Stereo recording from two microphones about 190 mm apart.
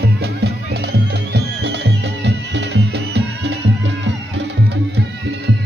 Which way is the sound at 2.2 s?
65° right (ahead or behind).